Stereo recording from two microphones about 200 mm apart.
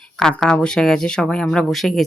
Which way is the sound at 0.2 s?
5° left (ahead or behind).